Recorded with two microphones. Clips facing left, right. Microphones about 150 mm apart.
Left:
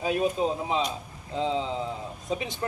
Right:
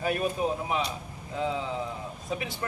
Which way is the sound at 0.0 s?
20° left (ahead or behind).